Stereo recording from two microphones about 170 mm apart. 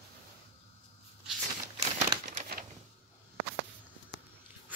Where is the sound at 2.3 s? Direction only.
45° right (ahead or behind).